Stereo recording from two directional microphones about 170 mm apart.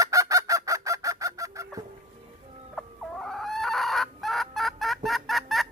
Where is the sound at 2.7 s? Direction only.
5° left (ahead or behind).